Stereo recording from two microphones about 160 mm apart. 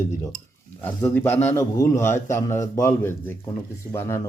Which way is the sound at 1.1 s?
10° left (ahead or behind).